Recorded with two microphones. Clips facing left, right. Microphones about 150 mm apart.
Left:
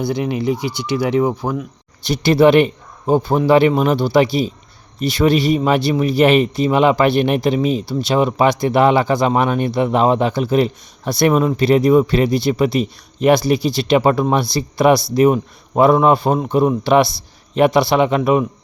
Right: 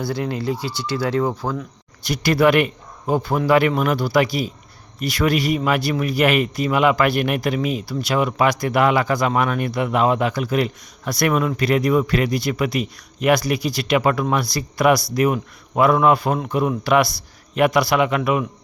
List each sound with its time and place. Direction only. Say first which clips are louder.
0.0 s speech: left 4 dB; 20° left (ahead or behind)
2.0 s speech: left 5 dB; 25° left (ahead or behind)